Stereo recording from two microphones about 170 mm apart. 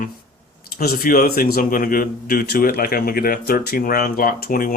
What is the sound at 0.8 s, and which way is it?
A man's voice, 65° left (ahead or behind).